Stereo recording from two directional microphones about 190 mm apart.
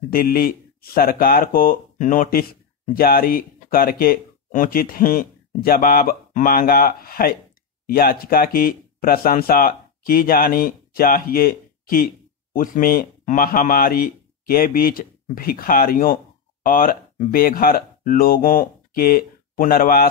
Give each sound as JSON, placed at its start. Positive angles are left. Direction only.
{"t": 0.1, "sound": "speech", "side_deg": 50}